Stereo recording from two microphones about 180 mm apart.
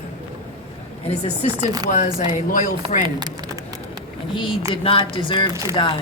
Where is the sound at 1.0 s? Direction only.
35° left (ahead or behind).